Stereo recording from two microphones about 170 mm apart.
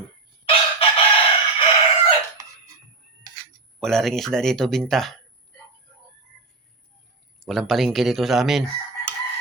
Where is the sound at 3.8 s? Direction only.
Centre (ahead or behind).